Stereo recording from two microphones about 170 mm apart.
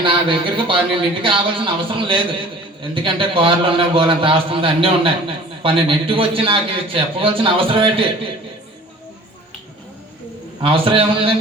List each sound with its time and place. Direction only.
0.0 s a man's voice: 30° right (ahead or behind)
10.6 s a man's voice: 30° right (ahead or behind)